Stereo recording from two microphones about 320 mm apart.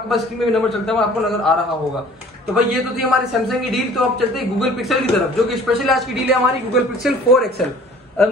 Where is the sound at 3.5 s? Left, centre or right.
Centre.